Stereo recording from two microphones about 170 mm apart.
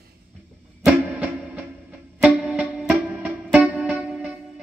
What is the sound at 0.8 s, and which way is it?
Music, 10° right (ahead or behind).